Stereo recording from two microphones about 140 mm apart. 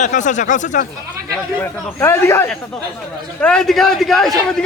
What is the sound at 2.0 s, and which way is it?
Speech, 20° left (ahead or behind).